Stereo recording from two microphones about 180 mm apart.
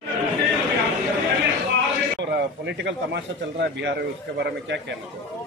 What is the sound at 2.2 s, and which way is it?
Speech, 70° right (ahead or behind).